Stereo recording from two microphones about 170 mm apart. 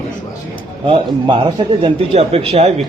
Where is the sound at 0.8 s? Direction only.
30° right (ahead or behind).